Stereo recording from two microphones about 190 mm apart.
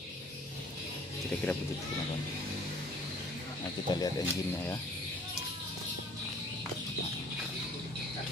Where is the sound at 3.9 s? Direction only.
20° left (ahead or behind).